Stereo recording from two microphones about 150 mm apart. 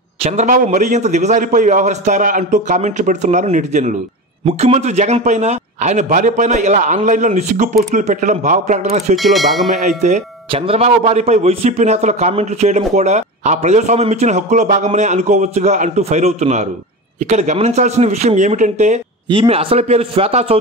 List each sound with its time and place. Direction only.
0.2 s a man's voice: 50° right (ahead or behind)
9.1 s speech: centre (ahead or behind)
9.8 s a man's voice: 50° right (ahead or behind)
10.5 s a man's voice: 40° right (ahead or behind)
19.3 s speech: 40° right (ahead or behind)